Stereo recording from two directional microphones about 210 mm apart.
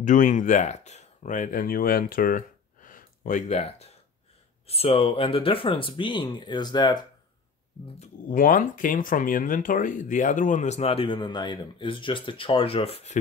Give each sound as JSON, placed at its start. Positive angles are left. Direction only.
{"t": 0.0, "sound": "speech", "side_deg": 35}
{"t": 8.3, "sound": "speech", "side_deg": 40}